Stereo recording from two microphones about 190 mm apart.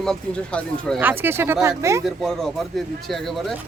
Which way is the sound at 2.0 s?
Centre (ahead or behind).